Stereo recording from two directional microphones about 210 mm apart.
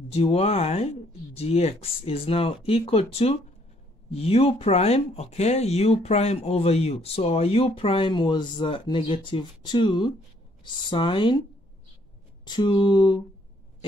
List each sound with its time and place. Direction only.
0.1 s speech: 30° left (ahead or behind)
12.4 s speech: 20° left (ahead or behind)